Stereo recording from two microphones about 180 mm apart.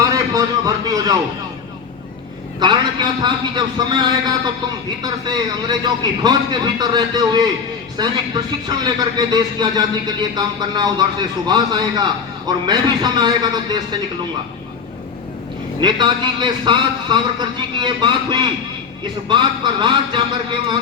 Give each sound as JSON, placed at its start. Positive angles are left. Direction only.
{"t": 0.0, "sound": "a sound", "side_deg": -20}
{"t": 2.6, "sound": "speech", "side_deg": -25}
{"t": 15.8, "sound": "speech", "side_deg": -25}